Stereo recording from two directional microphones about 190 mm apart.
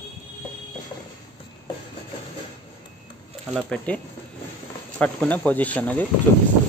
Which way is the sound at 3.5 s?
5° left (ahead or behind).